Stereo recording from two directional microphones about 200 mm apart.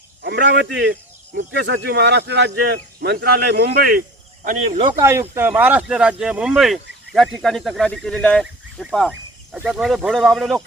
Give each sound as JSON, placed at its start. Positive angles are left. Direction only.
{"t": 0.2, "sound": "speech", "side_deg": -55}
{"t": 4.8, "sound": "speech", "side_deg": -15}